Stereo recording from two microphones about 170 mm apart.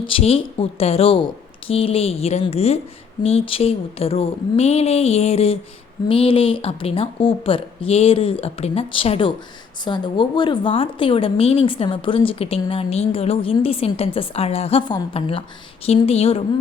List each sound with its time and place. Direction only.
0.0 s a woman's voice: 35° left (ahead or behind)